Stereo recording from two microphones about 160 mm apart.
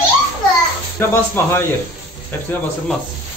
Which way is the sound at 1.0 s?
15° left (ahead or behind).